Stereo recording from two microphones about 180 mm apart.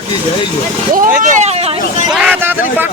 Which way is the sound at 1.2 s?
40° right (ahead or behind).